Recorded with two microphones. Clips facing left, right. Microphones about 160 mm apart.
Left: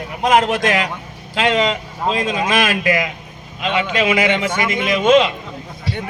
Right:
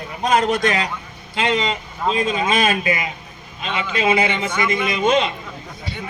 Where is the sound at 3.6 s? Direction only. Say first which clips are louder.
Left 3 dB; 70° left (ahead or behind).